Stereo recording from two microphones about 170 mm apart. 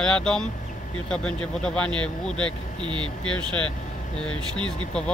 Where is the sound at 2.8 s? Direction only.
30° right (ahead or behind).